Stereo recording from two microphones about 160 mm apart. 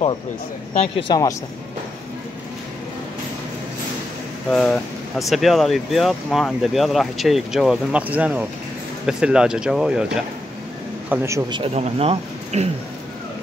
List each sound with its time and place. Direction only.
0.7 s speech: 30° left (ahead or behind)
4.5 s speech: centre (ahead or behind)
11.1 s a man's voice: 20° right (ahead or behind)
11.7 s speech: 40° right (ahead or behind)